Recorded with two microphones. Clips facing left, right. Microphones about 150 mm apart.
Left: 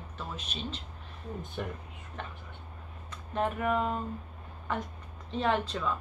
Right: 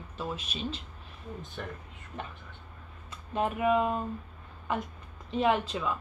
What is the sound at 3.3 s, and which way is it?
Speech, 10° right (ahead or behind).